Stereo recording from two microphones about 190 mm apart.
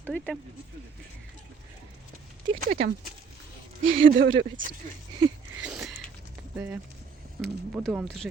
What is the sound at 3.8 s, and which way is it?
Speech, 85° right.